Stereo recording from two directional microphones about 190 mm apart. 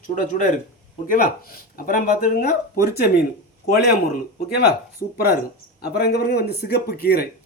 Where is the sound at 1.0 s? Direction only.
45° left (ahead or behind).